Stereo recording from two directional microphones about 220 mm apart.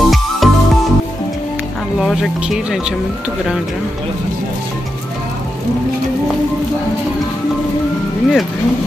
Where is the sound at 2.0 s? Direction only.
Centre (ahead or behind).